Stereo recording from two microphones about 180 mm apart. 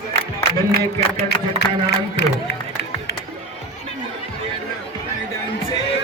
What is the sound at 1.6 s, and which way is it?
Speech, 65° left (ahead or behind).